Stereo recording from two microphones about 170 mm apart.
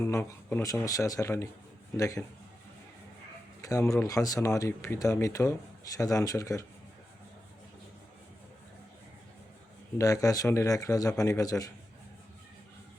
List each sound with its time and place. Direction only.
0.0 s a man's voice: 10° left (ahead or behind)
3.6 s a man's voice: 20° left (ahead or behind)
10.0 s a man's voice: 20° left (ahead or behind)